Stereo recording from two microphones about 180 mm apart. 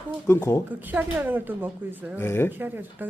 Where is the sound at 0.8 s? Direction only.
10° right (ahead or behind).